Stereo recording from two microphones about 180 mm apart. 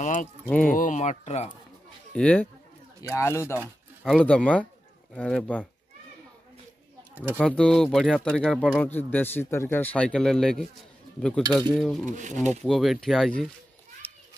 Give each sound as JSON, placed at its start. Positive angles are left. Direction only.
{"t": 0.0, "sound": "keys jangling", "side_deg": 45}
{"t": 0.7, "sound": "speech", "side_deg": 45}
{"t": 2.1, "sound": "speech", "side_deg": 5}
{"t": 4.0, "sound": "speech", "side_deg": 5}
{"t": 7.3, "sound": "speech", "side_deg": 5}
{"t": 12.1, "sound": "speech", "side_deg": -45}
{"t": 12.6, "sound": "speech", "side_deg": 0}
{"t": 14.0, "sound": "children playing", "side_deg": 10}